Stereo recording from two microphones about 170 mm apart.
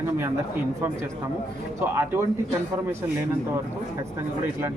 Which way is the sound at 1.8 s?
15° right (ahead or behind).